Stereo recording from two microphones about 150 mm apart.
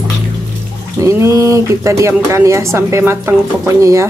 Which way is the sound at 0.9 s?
20° right (ahead or behind).